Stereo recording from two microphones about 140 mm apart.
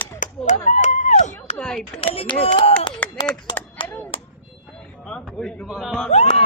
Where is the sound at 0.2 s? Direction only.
65° left (ahead or behind).